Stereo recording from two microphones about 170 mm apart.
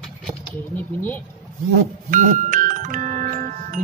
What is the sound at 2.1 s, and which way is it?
Music, 50° right (ahead or behind).